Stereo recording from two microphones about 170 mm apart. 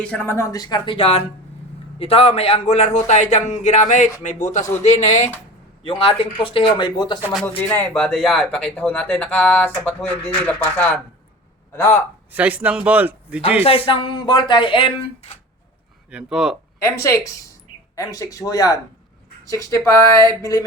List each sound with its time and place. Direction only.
0.0 s a man's voice: 10° left (ahead or behind); by 7.2 s 25° left (ahead or behind)
7.3 s speech: 10° left (ahead or behind)
12.3 s a man's voice: 10° right (ahead or behind)
13.7 s speech: 30° left (ahead or behind)
16.0 s speech: 5° right (ahead or behind)
16.8 s speech: 15° left (ahead or behind)